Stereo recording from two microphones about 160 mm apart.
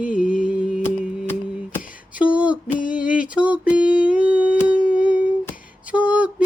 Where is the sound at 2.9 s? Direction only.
5° right (ahead or behind).